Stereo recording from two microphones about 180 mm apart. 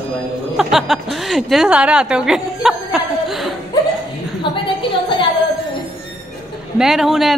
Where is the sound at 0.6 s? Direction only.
Centre (ahead or behind).